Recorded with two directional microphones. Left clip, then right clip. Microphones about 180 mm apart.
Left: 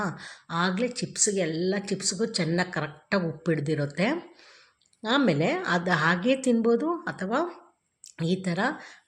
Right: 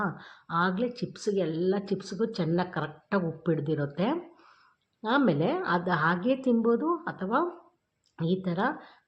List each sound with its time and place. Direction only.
0.0 s a woman's voice: 20° left (ahead or behind)